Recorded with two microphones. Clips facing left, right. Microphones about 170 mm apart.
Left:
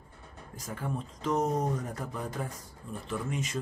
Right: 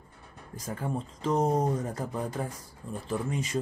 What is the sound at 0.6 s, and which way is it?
Speech, 30° right (ahead or behind).